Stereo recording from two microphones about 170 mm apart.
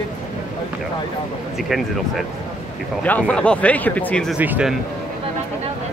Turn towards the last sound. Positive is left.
turn(degrees=-10)  # may be behind; listen again after turning